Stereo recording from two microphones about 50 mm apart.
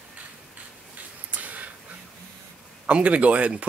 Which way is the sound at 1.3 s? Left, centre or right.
Right.